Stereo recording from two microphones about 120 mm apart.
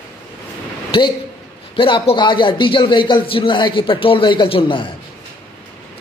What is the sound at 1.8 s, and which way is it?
A man's voice, 45° left (ahead or behind).